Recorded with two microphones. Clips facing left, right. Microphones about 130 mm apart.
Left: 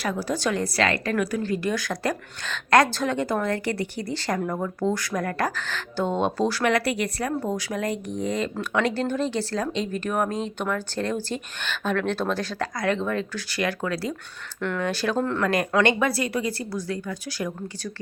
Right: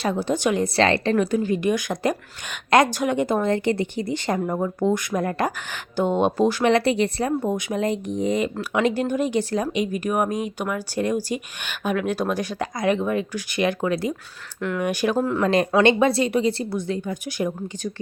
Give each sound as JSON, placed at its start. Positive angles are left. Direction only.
{"t": 0.0, "sound": "a woman's voice", "side_deg": -25}
{"t": 0.8, "sound": "a woman's voice", "side_deg": -30}
{"t": 14.6, "sound": "speech", "side_deg": -5}
{"t": 14.8, "sound": "speech", "side_deg": -15}
{"t": 15.4, "sound": "a woman's voice", "side_deg": -25}